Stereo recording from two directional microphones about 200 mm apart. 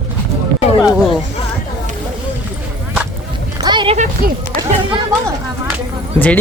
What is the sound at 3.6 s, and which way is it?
Music, 25° right (ahead or behind).